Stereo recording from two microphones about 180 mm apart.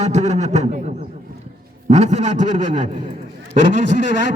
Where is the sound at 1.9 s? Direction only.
40° right (ahead or behind).